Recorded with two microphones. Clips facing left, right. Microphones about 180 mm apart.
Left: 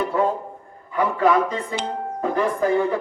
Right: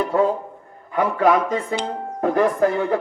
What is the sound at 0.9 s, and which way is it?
Speech, 55° right (ahead or behind).